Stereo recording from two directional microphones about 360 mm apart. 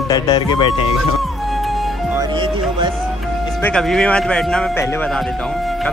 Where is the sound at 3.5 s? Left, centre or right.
Centre.